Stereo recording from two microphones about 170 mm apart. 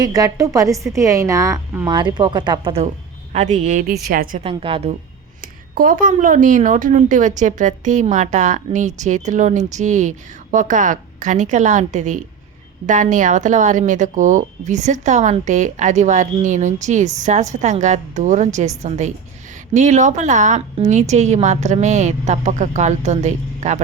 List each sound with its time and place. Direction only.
0.0 s a woman's voice: 20° right (ahead or behind)
1.9 s a woman's voice: 25° right (ahead or behind)
3.3 s a woman's voice: 45° right (ahead or behind)
4.4 s a woman's voice: 35° right (ahead or behind)
5.4 s a woman's voice: 55° right (ahead or behind)